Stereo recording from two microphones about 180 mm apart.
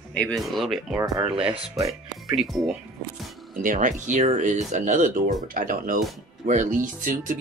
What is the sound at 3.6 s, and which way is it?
Speech, 45° right (ahead or behind).